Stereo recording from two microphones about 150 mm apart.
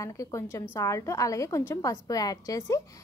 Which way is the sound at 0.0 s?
20° left (ahead or behind).